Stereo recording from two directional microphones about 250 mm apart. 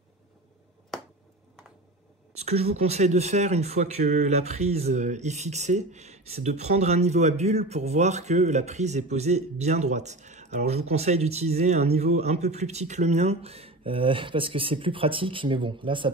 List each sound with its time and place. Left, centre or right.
2.3 s speech: right